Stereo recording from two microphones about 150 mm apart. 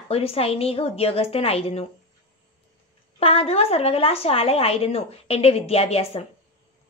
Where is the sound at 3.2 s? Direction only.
40° left (ahead or behind).